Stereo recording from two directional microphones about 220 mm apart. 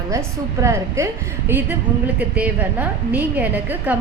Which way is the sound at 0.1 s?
15° right (ahead or behind).